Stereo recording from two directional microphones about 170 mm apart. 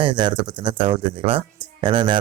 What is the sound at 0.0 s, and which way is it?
A man's voice, 25° right (ahead or behind).